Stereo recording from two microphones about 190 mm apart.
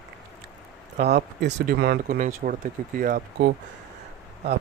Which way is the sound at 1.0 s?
35° right (ahead or behind).